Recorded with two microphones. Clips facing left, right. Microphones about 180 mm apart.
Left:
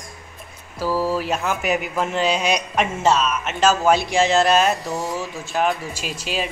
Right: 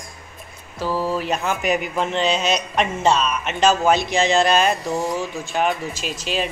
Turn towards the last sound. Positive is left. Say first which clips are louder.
# right 1 dB
turn(degrees=5)  # may be behind; listen again after turning